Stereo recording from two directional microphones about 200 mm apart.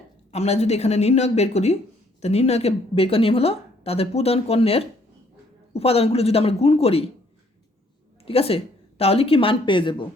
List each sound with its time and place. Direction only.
0.3 s a woman's voice: 35° left (ahead or behind)
8.2 s a woman's voice: 30° left (ahead or behind)